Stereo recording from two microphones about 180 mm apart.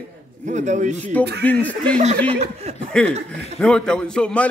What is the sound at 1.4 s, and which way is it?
Speech, 10° left (ahead or behind).